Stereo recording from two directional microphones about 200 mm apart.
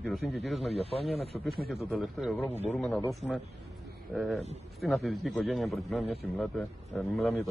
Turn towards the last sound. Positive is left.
turn(degrees=0)  # may be behind; listen again after turning